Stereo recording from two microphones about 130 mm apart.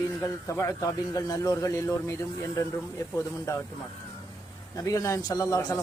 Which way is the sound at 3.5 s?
25° left (ahead or behind).